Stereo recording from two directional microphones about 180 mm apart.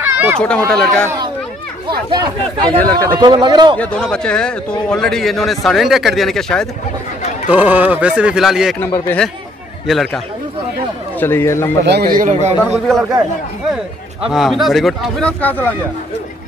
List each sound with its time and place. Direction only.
0.0 s a sound: 10° right (ahead or behind)
0.7 s a man's voice: 5° left (ahead or behind)
1.9 s speech: 25° right (ahead or behind)
2.8 s a man's voice: 10° left (ahead or behind)
3.2 s speech: 25° right (ahead or behind)
3.7 s a man's voice: 5° left (ahead or behind)
7.4 s speech: 10° right (ahead or behind)
8.7 s a man's voice: 10° left (ahead or behind)
11.1 s a man's voice: 10° left (ahead or behind)
11.8 s speech: 65° right (ahead or behind); by 12.5 s 40° right (ahead or behind)
12.6 s a man's voice: centre (ahead or behind)
14.3 s a man's voice: centre (ahead or behind)